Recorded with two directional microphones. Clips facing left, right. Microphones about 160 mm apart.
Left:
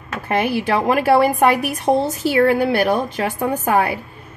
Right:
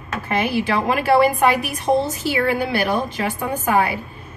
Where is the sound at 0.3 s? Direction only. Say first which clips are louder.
Left 2 dB; 50° left (ahead or behind).